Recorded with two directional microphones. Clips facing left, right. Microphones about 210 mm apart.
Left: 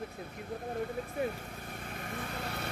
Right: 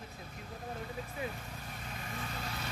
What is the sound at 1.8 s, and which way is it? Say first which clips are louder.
Vehicle: left 3 dB; 50° left (ahead or behind).